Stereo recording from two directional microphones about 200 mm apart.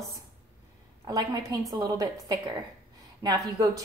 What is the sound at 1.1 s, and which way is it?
A woman's voice, 20° right (ahead or behind).